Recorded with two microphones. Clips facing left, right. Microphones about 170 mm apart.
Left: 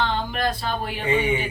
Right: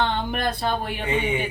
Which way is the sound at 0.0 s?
55° right (ahead or behind).